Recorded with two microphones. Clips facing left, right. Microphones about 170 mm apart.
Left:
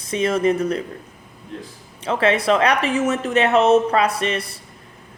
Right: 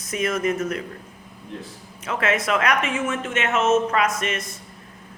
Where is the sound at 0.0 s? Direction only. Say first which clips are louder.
Left 5 dB; 30° left (ahead or behind).